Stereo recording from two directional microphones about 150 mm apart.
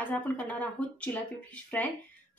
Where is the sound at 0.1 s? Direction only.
10° left (ahead or behind).